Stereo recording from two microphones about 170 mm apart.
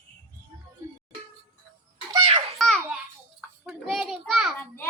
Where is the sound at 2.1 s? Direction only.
30° right (ahead or behind).